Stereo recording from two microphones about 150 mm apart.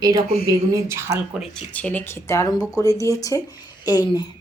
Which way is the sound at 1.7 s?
10° left (ahead or behind).